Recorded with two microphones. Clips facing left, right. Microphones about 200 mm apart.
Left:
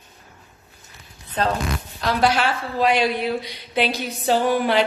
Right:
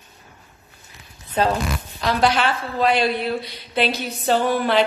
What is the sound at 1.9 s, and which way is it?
A woman's voice, centre (ahead or behind).